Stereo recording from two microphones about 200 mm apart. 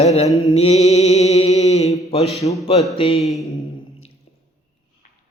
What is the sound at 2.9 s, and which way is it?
Speech, 30° left (ahead or behind).